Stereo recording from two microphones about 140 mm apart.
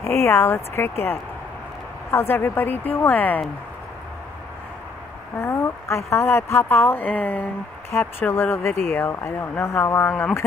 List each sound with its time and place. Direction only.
0.0 s speech: 20° left (ahead or behind)
5.4 s speech: 20° left (ahead or behind)